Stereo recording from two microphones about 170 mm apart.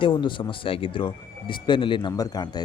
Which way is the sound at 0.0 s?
25° left (ahead or behind).